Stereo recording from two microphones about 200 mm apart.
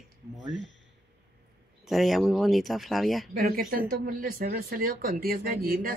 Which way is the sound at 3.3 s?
45° right (ahead or behind).